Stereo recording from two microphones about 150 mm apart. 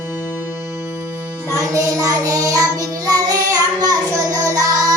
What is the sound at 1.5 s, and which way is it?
Child singing, 20° right (ahead or behind).